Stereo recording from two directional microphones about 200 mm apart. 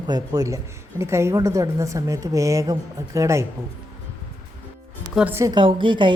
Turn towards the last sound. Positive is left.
turn(degrees=-25)  # may be behind; listen again after turning